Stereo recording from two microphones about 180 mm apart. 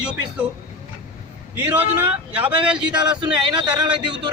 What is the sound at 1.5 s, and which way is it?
Speech, 10° right (ahead or behind).